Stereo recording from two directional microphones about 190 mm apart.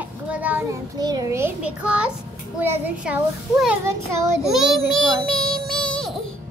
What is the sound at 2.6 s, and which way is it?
A child's voice, 10° right (ahead or behind).